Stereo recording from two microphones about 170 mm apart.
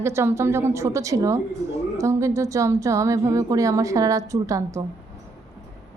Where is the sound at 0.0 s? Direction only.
15° right (ahead or behind).